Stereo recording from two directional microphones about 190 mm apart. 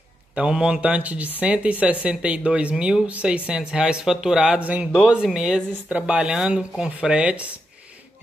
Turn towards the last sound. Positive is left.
turn(degrees=-5)  # may be behind; listen again after turning